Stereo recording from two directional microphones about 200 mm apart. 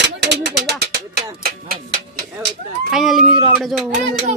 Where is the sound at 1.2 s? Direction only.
45° right (ahead or behind).